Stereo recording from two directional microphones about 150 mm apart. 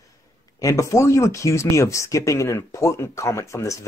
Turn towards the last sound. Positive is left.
turn(degrees=20)  # may be behind; listen again after turning